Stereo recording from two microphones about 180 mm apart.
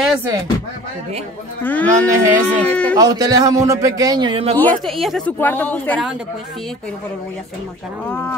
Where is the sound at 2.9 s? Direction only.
20° right (ahead or behind).